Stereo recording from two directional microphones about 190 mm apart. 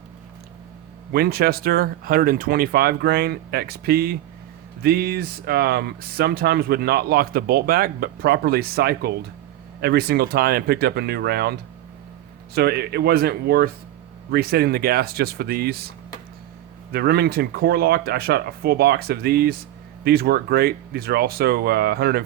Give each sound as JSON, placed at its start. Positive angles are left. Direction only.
{"t": 1.1, "sound": "speech", "side_deg": -55}
{"t": 12.5, "sound": "speech", "side_deg": -55}
{"t": 16.9, "sound": "speech", "side_deg": -55}